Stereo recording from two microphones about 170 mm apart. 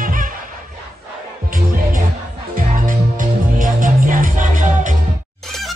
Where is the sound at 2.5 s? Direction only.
50° right (ahead or behind).